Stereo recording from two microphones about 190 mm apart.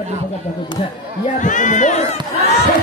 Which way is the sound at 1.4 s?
40° left (ahead or behind).